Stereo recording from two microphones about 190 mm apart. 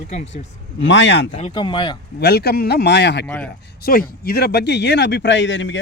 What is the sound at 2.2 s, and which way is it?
Speech, 60° left (ahead or behind).